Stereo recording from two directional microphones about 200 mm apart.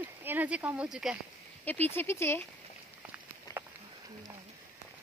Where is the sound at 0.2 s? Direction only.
10° right (ahead or behind).